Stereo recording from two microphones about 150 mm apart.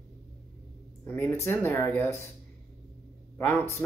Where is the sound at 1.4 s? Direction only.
15° left (ahead or behind).